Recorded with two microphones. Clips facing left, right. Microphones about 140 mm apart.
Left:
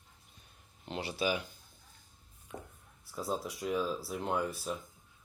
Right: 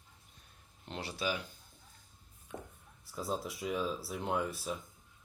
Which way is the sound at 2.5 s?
5° right (ahead or behind).